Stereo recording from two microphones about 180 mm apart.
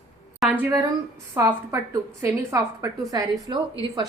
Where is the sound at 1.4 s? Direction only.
15° right (ahead or behind).